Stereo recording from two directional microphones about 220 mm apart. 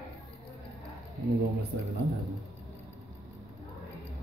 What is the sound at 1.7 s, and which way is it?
Speech, 50° right (ahead or behind).